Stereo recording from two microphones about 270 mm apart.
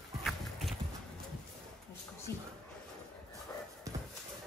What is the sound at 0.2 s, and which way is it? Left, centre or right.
Horse, centre.